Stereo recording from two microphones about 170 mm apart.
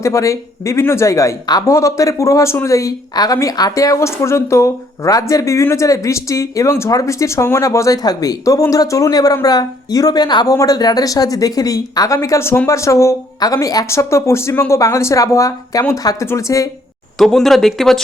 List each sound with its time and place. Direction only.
0.0 s speech: 20° left (ahead or behind)
17.2 s speech: centre (ahead or behind)